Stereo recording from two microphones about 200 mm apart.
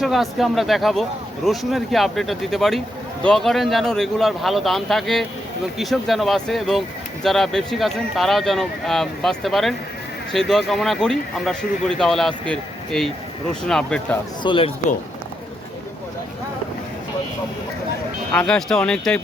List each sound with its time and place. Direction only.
0.0 s speech: centre (ahead or behind)
14.4 s speech: 25° left (ahead or behind)
18.3 s speech: 5° left (ahead or behind)